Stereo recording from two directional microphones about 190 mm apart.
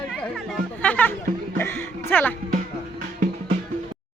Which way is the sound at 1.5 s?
10° left (ahead or behind).